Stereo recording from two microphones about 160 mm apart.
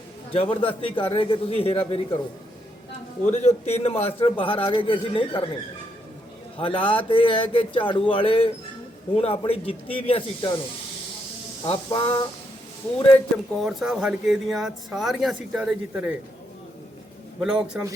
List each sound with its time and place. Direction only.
0.3 s a man's voice: 35° left (ahead or behind)
3.2 s a man's voice: 45° left (ahead or behind)
6.6 s a man's voice: 35° left (ahead or behind)
11.6 s a man's voice: 35° left (ahead or behind)
13.6 s speech: centre (ahead or behind)
17.4 s speech: 5° right (ahead or behind)